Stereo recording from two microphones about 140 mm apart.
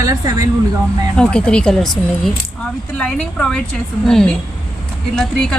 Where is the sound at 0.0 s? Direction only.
25° right (ahead or behind).